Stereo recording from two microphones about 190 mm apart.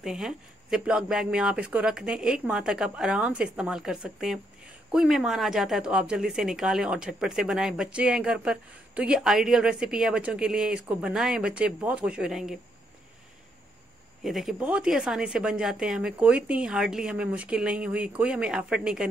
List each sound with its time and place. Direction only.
0.0 s speech: centre (ahead or behind)
14.2 s speech: centre (ahead or behind)